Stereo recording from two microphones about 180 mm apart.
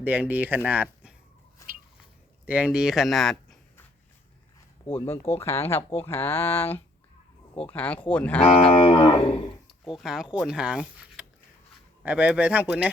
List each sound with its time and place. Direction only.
0.0 s speech: 10° right (ahead or behind)
2.5 s speech: 5° right (ahead or behind)
4.9 s speech: 15° left (ahead or behind)
8.4 s cattle: 30° left (ahead or behind)
9.6 s speech: centre (ahead or behind)